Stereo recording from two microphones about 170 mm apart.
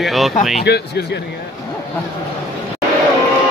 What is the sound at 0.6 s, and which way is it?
Speech, 75° left (ahead or behind).